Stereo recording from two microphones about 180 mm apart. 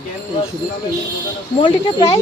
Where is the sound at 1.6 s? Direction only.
25° left (ahead or behind).